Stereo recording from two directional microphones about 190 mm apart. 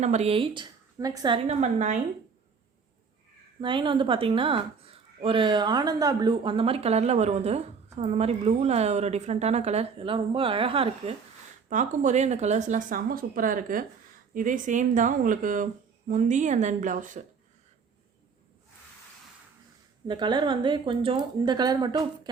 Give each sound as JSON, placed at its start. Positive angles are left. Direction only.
{"t": 0.0, "sound": "a woman's voice", "side_deg": -35}
{"t": 1.5, "sound": "a woman's voice", "side_deg": -35}
{"t": 3.6, "sound": "a woman's voice", "side_deg": -25}
{"t": 11.7, "sound": "a woman's voice", "side_deg": -40}
{"t": 20.1, "sound": "a woman's voice", "side_deg": -25}